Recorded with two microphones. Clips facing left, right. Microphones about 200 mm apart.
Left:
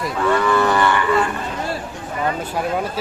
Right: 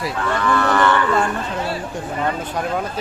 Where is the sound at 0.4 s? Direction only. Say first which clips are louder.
Right 4 dB; 10° left (ahead or behind).